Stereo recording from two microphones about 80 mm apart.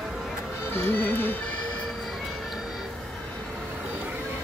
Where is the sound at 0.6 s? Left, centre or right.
Left.